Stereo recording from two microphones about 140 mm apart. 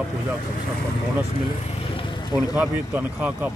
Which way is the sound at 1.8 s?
40° left (ahead or behind).